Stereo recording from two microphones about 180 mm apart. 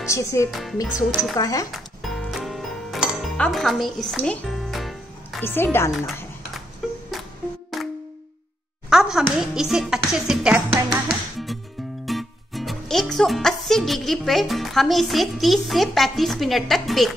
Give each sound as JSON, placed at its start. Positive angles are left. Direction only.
{"t": 0.1, "sound": "speech", "side_deg": 15}
{"t": 0.5, "sound": "speech", "side_deg": 0}
{"t": 1.3, "sound": "speech", "side_deg": 20}
{"t": 1.7, "sound": "music", "side_deg": 0}
{"t": 5.4, "sound": "speech", "side_deg": 10}
{"t": 7.7, "sound": "music", "side_deg": 0}
{"t": 8.9, "sound": "a child's voice", "side_deg": 0}